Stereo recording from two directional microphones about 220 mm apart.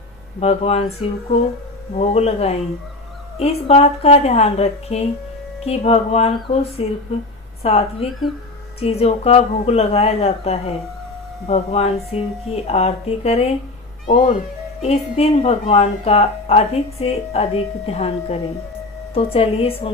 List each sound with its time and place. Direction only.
0.3 s speech: 30° left (ahead or behind)